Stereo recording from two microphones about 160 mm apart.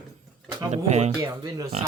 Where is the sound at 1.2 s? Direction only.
20° right (ahead or behind).